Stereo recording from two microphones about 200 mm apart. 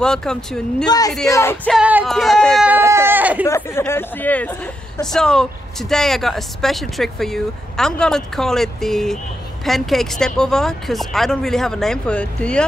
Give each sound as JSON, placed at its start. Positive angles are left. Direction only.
{"t": 0.0, "sound": "speech", "side_deg": 5}
{"t": 0.8, "sound": "a man's voice", "side_deg": 20}
{"t": 1.2, "sound": "music", "side_deg": 15}
{"t": 1.7, "sound": "speech", "side_deg": -5}
{"t": 3.4, "sound": "speech", "side_deg": 15}